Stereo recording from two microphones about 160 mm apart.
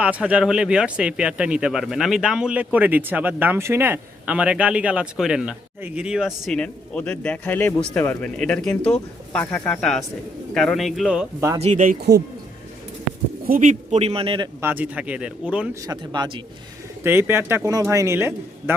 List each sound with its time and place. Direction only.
0.0 s speech: 5° right (ahead or behind)
11.3 s speech: 20° right (ahead or behind)
11.6 s a man's voice: 50° right (ahead or behind)
11.9 s speech: 80° right
13.5 s a man's voice: 55° right (ahead or behind); by 14.5 s 30° right (ahead or behind)
14.6 s speech: 10° right (ahead or behind)
15.9 s speech: 25° right (ahead or behind)
17.0 s speech: 15° right (ahead or behind)